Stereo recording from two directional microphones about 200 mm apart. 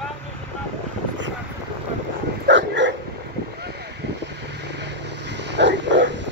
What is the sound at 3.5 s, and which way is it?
Vehicle, 55° right (ahead or behind).